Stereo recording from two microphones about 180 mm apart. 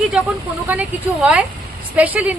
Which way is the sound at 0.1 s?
5° right (ahead or behind).